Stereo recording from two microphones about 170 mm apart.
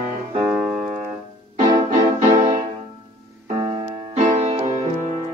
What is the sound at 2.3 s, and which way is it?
Music, 40° right (ahead or behind).